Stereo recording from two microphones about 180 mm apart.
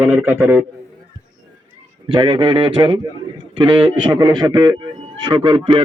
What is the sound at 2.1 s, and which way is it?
A man's voice, 25° right (ahead or behind).